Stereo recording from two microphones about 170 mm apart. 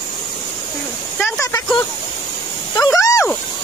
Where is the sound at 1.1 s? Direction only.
10° left (ahead or behind).